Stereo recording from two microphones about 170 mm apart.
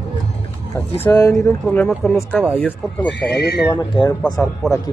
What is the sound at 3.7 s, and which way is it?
Speech, 25° left (ahead or behind).